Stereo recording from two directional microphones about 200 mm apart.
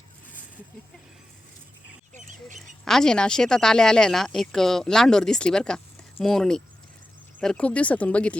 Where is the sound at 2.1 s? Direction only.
40° right (ahead or behind).